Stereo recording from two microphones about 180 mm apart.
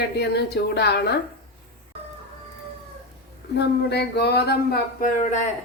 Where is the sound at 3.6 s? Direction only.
65° left (ahead or behind); by 5.4 s 45° left (ahead or behind).